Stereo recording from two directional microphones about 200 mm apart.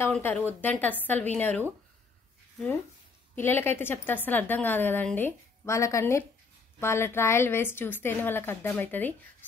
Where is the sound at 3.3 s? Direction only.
10° left (ahead or behind).